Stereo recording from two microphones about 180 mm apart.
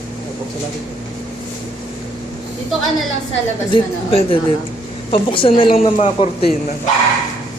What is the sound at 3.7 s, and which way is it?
A woman's voice, 30° left (ahead or behind).